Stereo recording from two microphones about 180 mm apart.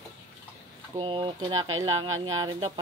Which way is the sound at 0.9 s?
30° right (ahead or behind).